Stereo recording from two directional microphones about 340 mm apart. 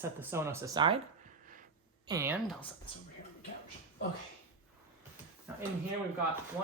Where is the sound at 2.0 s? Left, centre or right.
Centre.